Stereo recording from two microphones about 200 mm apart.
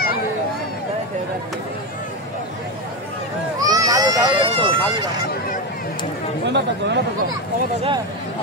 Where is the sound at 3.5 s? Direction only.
15° right (ahead or behind).